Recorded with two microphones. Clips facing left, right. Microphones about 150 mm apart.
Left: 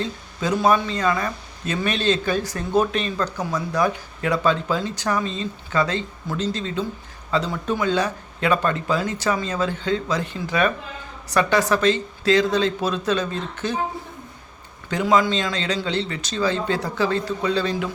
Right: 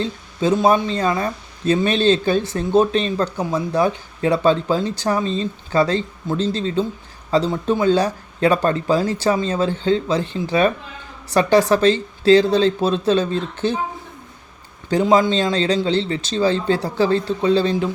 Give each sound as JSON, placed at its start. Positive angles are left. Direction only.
{"t": 0.0, "sound": "speech", "side_deg": -25}
{"t": 15.1, "sound": "speech", "side_deg": -30}